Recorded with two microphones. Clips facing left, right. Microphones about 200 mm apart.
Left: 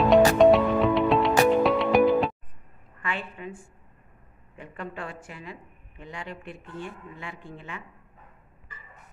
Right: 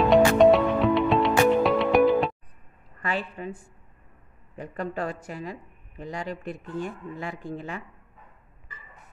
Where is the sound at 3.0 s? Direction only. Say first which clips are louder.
Right 4 dB; 40° right (ahead or behind).